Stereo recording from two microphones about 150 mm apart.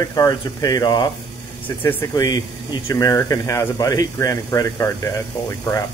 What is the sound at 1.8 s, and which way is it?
Speech, 15° left (ahead or behind).